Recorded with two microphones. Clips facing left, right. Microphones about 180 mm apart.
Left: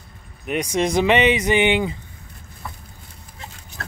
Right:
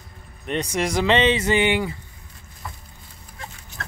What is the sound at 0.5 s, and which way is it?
Speech, 15° left (ahead or behind).